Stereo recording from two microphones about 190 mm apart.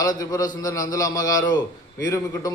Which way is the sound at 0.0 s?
20° left (ahead or behind).